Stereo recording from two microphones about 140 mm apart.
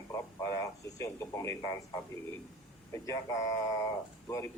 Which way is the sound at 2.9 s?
25° left (ahead or behind).